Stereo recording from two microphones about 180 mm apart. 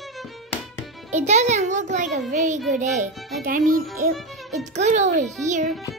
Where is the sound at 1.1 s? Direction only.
40° right (ahead or behind).